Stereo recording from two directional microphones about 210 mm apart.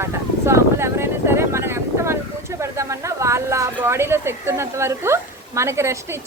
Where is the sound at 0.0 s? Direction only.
10° right (ahead or behind).